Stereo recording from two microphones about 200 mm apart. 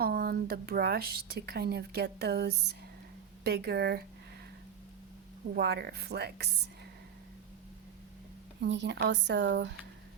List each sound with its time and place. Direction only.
0.0 s speech: 50° right (ahead or behind)
5.5 s speech: 55° right (ahead or behind)
8.6 s speech: 60° right (ahead or behind)